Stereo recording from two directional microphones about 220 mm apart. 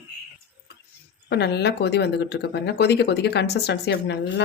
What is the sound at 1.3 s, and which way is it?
Speech, 50° left (ahead or behind).